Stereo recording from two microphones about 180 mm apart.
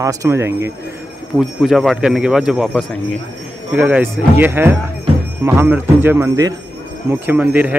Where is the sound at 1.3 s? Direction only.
Centre (ahead or behind).